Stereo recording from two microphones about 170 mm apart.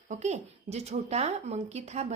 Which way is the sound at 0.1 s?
40° right (ahead or behind).